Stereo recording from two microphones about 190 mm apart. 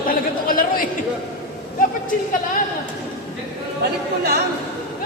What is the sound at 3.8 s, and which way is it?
Chatter, 55° right (ahead or behind).